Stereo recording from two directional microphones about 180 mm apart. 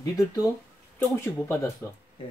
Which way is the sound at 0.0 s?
20° left (ahead or behind).